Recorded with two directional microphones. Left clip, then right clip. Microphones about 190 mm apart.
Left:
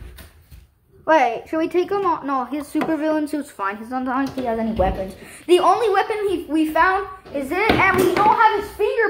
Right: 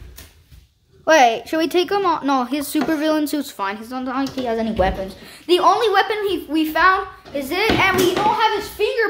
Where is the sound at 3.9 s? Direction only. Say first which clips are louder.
Left 1 dB; 10° right (ahead or behind).